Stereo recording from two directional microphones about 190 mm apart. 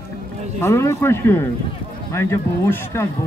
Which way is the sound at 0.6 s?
15° left (ahead or behind).